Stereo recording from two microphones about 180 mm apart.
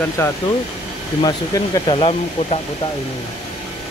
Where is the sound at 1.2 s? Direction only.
20° left (ahead or behind).